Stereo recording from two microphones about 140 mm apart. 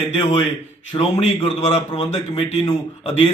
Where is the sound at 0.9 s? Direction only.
30° left (ahead or behind).